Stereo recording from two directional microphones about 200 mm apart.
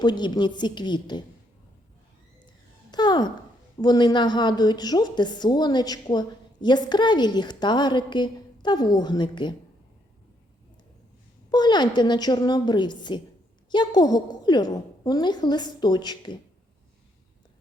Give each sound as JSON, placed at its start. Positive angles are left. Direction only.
{"t": 0.0, "sound": "a woman's voice", "side_deg": 20}
{"t": 2.9, "sound": "a sound", "side_deg": 20}
{"t": 3.8, "sound": "a woman's voice", "side_deg": 20}
{"t": 11.5, "sound": "a woman's voice", "side_deg": 20}